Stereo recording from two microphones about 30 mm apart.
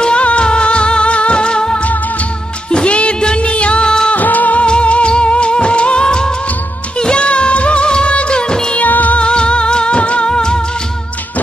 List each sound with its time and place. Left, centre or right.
0.0 s music: left
2.7 s music of bollywood: left
3.2 s music: left
3.8 s music: left
4.1 s music of bollywood: left
4.6 s music of bollywood: left
6.0 s music of bollywood: left
7.0 s music: left
7.2 s music of bollywood: left
8.7 s music of bollywood: left
9.2 s music: left